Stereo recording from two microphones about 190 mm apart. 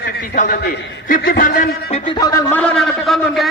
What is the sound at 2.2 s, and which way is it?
A man's voice, 15° left (ahead or behind).